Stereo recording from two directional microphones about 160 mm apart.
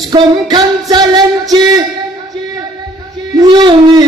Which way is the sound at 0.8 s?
25° right (ahead or behind).